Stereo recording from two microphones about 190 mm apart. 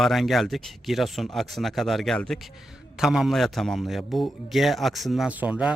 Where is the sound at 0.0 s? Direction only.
Centre (ahead or behind).